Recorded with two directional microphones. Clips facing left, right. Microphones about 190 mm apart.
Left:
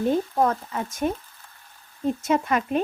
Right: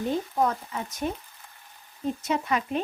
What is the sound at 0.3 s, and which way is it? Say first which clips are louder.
Speech: left 3 dB; 55° left (ahead or behind).